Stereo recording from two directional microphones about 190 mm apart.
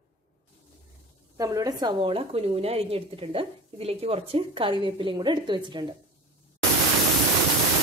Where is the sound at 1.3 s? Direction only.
15° right (ahead or behind).